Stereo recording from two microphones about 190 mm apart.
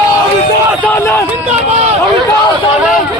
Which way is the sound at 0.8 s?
10° left (ahead or behind).